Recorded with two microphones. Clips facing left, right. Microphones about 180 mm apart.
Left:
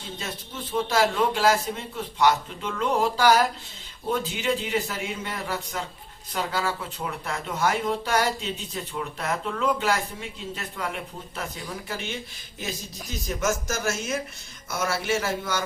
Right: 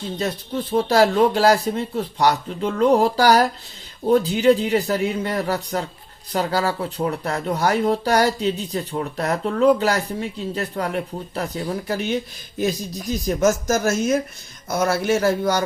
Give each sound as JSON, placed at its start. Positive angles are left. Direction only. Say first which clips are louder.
{"t": 0.2, "sound": "speech", "louder": "right 13 dB", "side_deg": -35}